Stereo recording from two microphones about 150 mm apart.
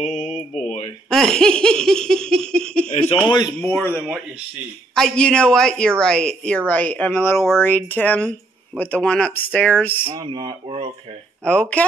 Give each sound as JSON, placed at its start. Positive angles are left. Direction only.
{"t": 0.0, "sound": "mantra", "side_deg": 55}
{"t": 1.1, "sound": "speech", "side_deg": 5}
{"t": 2.9, "sound": "speech", "side_deg": 50}
{"t": 3.6, "sound": "speech", "side_deg": 15}
{"t": 10.1, "sound": "speech", "side_deg": -30}
{"t": 11.4, "sound": "speech", "side_deg": 10}